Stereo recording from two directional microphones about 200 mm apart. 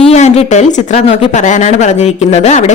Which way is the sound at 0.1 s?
35° left (ahead or behind).